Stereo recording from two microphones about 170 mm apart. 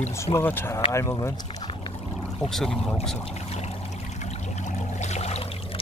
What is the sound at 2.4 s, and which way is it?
Speech, centre (ahead or behind).